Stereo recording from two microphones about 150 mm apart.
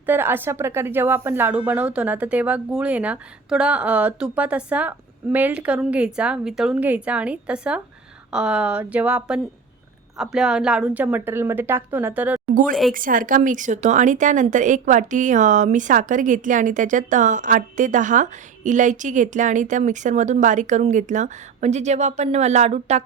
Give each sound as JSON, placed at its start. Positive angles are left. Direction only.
{"t": 0.0, "sound": "speech", "side_deg": -15}
{"t": 12.9, "sound": "speech", "side_deg": -65}